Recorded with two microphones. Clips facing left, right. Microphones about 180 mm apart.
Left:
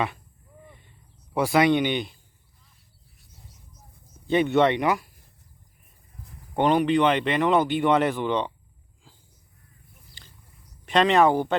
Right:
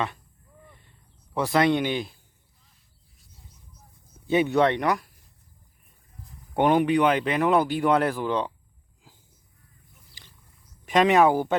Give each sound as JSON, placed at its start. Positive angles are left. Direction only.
{"t": 1.3, "sound": "speech", "side_deg": 10}
{"t": 4.3, "sound": "speech", "side_deg": -5}
{"t": 6.5, "sound": "speech", "side_deg": -15}
{"t": 10.9, "sound": "speech", "side_deg": -5}